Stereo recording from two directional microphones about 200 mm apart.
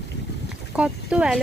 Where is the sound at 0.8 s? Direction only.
5° right (ahead or behind).